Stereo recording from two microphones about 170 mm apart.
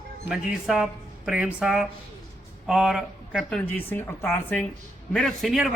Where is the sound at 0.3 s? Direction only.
5° right (ahead or behind); by 4.6 s 15° left (ahead or behind).